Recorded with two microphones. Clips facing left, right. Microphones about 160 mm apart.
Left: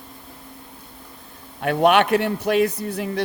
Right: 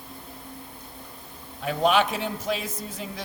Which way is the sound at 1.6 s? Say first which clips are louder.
Left 5 dB; 65° left (ahead or behind).